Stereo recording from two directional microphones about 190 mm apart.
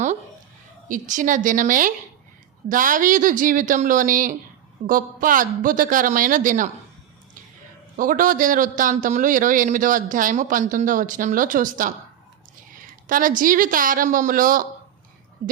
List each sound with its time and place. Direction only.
0.9 s a man's voice: 45° right (ahead or behind)
7.9 s a man's voice: 45° right (ahead or behind)
15.4 s a sound: 40° right (ahead or behind)